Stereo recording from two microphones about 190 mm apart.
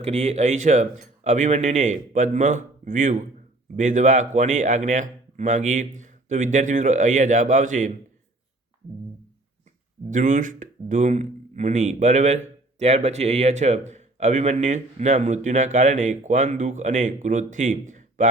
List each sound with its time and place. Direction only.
0.0 s speech: 35° right (ahead or behind)
10.1 s speech: 40° right (ahead or behind)